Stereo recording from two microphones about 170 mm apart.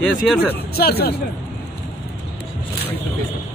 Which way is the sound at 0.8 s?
70° left (ahead or behind).